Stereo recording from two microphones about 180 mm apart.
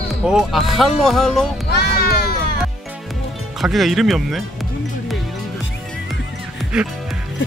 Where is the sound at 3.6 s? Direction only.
Centre (ahead or behind).